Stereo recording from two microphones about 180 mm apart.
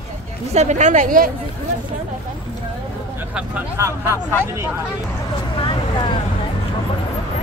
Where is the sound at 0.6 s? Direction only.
40° right (ahead or behind).